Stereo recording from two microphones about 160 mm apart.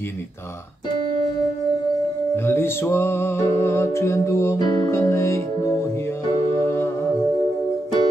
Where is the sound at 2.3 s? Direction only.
15° left (ahead or behind).